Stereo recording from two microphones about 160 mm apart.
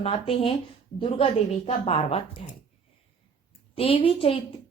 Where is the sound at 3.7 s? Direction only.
35° left (ahead or behind).